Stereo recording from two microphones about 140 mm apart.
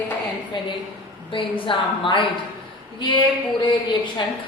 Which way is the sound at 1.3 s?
40° left (ahead or behind).